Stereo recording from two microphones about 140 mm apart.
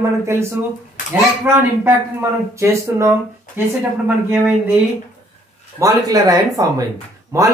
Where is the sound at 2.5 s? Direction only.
20° right (ahead or behind).